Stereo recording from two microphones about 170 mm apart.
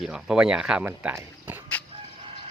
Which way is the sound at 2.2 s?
30° right (ahead or behind).